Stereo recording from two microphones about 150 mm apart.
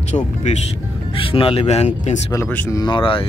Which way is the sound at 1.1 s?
35° left (ahead or behind).